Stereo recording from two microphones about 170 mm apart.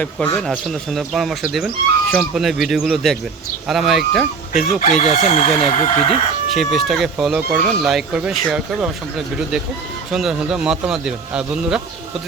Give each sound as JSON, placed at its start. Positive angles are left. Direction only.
{"t": 0.0, "sound": "speech", "side_deg": 10}
{"t": 4.8, "sound": "chicken", "side_deg": 40}
{"t": 5.7, "sound": "speech", "side_deg": 45}
{"t": 6.5, "sound": "speech", "side_deg": 0}